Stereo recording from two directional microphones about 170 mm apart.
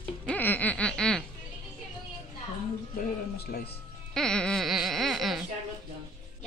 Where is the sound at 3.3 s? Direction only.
65° left (ahead or behind).